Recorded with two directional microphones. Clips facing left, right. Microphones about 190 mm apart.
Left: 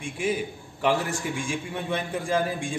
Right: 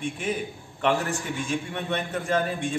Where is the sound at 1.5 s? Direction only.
5° left (ahead or behind).